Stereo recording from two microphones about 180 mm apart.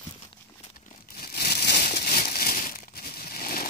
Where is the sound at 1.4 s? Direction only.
60° left (ahead or behind).